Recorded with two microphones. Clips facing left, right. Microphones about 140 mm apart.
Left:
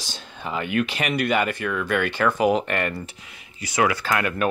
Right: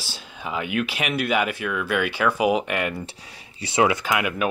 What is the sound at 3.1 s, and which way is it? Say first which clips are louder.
Speech: right 2 dB; 30° right (ahead or behind).